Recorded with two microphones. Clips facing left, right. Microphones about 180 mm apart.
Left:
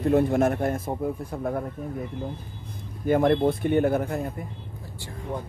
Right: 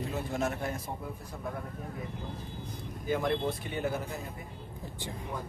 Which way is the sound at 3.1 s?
55° left (ahead or behind).